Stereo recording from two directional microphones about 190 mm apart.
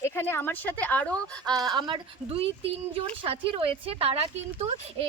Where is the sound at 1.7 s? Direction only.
25° right (ahead or behind).